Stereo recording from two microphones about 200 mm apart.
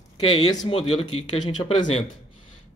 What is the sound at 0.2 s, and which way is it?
Speech, 25° left (ahead or behind).